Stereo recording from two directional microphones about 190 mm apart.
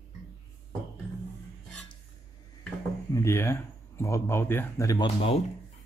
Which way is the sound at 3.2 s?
15° left (ahead or behind).